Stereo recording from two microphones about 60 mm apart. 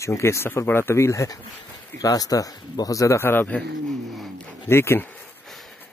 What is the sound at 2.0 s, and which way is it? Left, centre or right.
Speech, left.